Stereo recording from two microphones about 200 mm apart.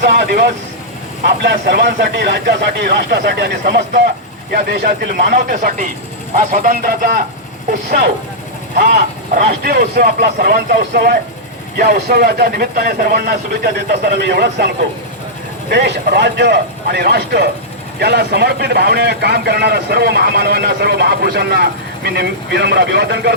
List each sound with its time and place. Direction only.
0.0 s a man's voice: 55° right (ahead or behind)
5.2 s speech: 50° right (ahead or behind)
9.6 s speech: 50° right (ahead or behind)
15.7 s a man's voice: 55° right (ahead or behind)